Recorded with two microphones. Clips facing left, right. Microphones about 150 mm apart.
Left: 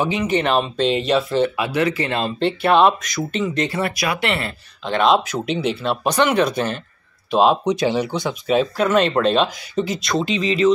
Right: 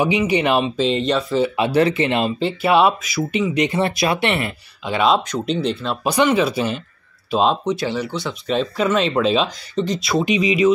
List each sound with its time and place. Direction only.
0.0 s speech: 10° right (ahead or behind)
1.6 s speech: 30° right (ahead or behind)
2.0 s speech: 20° right (ahead or behind)
2.2 s speech: 5° right (ahead or behind)
5.1 s speech: 5° left (ahead or behind)
6.3 s speech: 5° right (ahead or behind)
7.6 s speech: 15° left (ahead or behind)
10.1 s speech: 15° right (ahead or behind)